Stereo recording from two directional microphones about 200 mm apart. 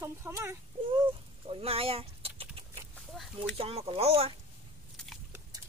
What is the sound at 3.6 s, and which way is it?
Speech, 30° right (ahead or behind).